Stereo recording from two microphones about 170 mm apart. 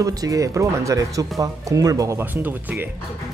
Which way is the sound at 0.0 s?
20° right (ahead or behind).